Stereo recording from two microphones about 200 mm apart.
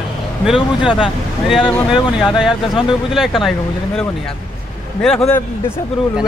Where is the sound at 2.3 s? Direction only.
Centre (ahead or behind).